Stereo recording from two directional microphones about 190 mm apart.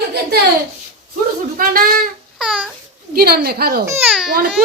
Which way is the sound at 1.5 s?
50° right (ahead or behind).